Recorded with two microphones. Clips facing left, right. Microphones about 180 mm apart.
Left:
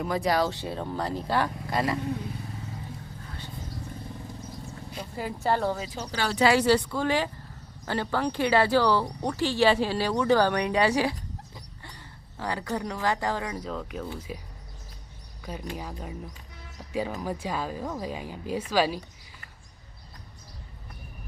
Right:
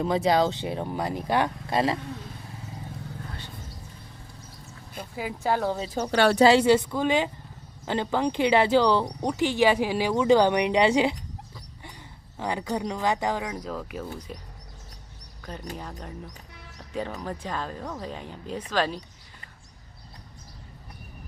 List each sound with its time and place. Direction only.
0.0 s speech: 25° right (ahead or behind)
5.1 s speech: 5° right (ahead or behind)
6.0 s speech: 65° right (ahead or behind)
6.4 s speech: 25° right (ahead or behind)
12.4 s speech: 20° right (ahead or behind)
13.7 s speech: 5° right (ahead or behind)
15.7 s speech: 5° left (ahead or behind)